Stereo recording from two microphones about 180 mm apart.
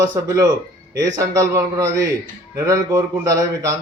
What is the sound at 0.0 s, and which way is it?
A man's voice, 20° right (ahead or behind).